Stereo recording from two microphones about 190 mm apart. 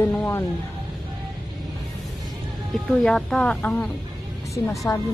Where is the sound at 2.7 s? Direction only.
Centre (ahead or behind).